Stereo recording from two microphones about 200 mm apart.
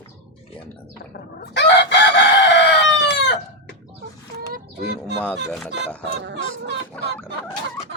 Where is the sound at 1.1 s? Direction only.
55° left (ahead or behind).